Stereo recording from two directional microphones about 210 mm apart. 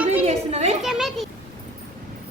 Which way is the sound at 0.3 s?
30° right (ahead or behind).